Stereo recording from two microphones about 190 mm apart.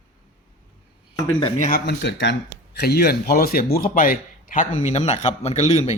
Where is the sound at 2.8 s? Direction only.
55° left (ahead or behind).